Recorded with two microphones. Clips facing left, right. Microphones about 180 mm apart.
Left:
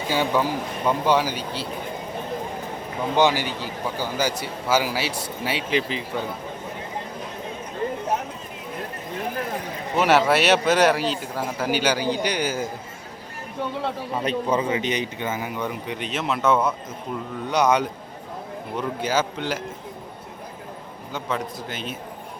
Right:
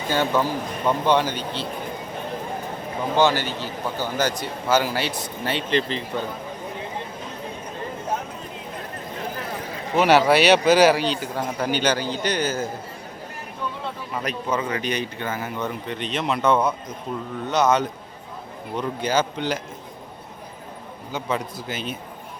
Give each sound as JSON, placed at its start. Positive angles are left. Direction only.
{"t": 0.1, "sound": "a man's voice", "side_deg": 10}
{"t": 3.2, "sound": "a man's voice", "side_deg": 15}
{"t": 10.0, "sound": "a man's voice", "side_deg": 0}
{"t": 14.2, "sound": "a man's voice", "side_deg": 30}
{"t": 17.5, "sound": "a man's voice", "side_deg": 10}
{"t": 21.1, "sound": "a man's voice", "side_deg": 0}